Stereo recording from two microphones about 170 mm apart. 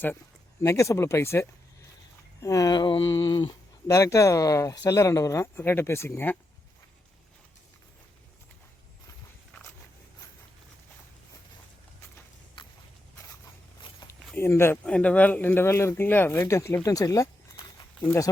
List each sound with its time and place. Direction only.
0.6 s speech: 15° left (ahead or behind)
12.6 s walk: 30° left (ahead or behind)
14.3 s speech: 15° left (ahead or behind)